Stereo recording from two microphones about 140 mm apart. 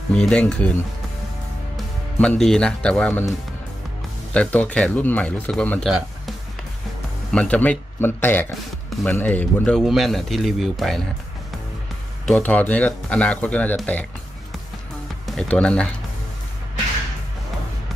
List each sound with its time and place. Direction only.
0.1 s speech: 5° left (ahead or behind)
2.1 s speech: 5° left (ahead or behind)
4.3 s speech: 10° left (ahead or behind)
7.3 s speech: 10° left (ahead or behind)
12.3 s speech: 10° left (ahead or behind)
15.2 s speech: 5° left (ahead or behind)